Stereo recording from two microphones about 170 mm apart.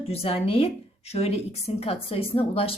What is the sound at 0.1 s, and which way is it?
Speech, 35° left (ahead or behind).